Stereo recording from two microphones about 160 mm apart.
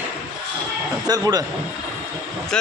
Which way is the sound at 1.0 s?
25° right (ahead or behind).